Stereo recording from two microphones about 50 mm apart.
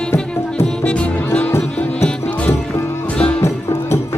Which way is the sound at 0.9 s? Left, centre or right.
Left.